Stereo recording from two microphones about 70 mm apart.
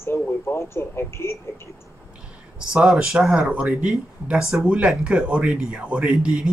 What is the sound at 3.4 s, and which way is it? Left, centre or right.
A man's voice, centre.